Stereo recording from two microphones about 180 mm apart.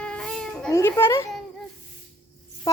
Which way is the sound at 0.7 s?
15° left (ahead or behind).